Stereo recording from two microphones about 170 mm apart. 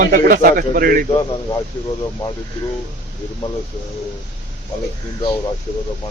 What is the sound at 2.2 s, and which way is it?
Speech, 10° left (ahead or behind).